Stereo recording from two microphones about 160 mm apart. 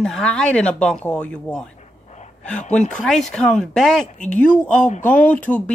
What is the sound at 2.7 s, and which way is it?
Speech, 5° left (ahead or behind).